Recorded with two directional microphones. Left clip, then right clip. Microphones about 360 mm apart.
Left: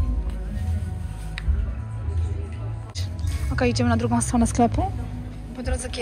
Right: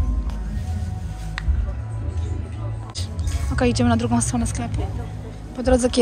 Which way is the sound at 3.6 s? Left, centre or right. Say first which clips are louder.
Right 2 dB; centre.